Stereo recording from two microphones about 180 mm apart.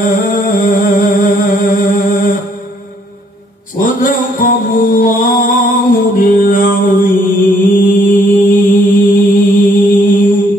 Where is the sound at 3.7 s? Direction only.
50° left (ahead or behind).